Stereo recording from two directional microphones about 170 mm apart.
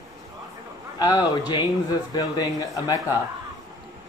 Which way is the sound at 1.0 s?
25° left (ahead or behind).